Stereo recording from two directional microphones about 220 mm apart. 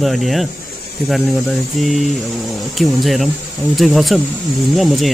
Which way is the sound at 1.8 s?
Centre (ahead or behind).